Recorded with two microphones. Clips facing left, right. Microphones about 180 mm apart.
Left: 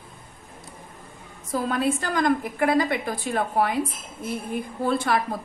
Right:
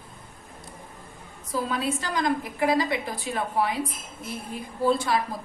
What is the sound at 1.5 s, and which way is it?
A woman's voice, 55° left (ahead or behind).